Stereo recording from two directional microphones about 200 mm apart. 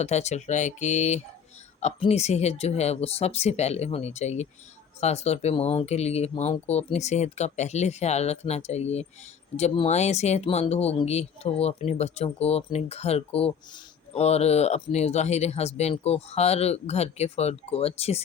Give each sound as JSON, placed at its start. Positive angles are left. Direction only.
{"t": 0.0, "sound": "speech", "side_deg": 35}